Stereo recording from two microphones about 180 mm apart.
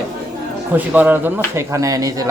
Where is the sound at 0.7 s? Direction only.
10° right (ahead or behind).